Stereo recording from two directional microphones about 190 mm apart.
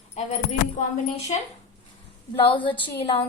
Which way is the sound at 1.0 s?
40° left (ahead or behind).